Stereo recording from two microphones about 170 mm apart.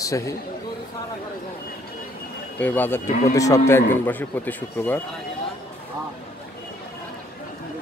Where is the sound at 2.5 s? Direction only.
10° left (ahead or behind).